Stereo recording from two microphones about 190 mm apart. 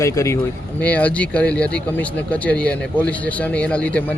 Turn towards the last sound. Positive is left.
turn(degrees=5)  # may be behind; listen again after turning